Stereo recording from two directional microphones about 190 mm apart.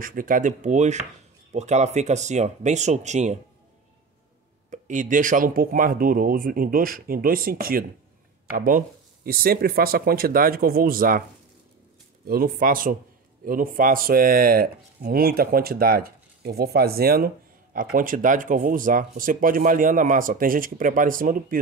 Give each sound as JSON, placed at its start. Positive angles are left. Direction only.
{"t": 0.0, "sound": "speech", "side_deg": -45}
{"t": 4.6, "sound": "speech", "side_deg": -40}
{"t": 12.3, "sound": "speech", "side_deg": -50}